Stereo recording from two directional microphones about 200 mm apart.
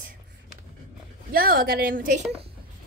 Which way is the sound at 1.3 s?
45° right (ahead or behind).